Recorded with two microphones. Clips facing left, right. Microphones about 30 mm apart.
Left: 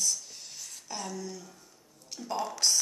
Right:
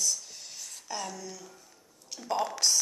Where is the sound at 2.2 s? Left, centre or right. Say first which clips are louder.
Right 3 dB; centre.